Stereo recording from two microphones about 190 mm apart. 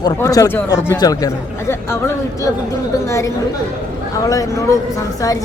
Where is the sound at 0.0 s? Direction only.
20° left (ahead or behind).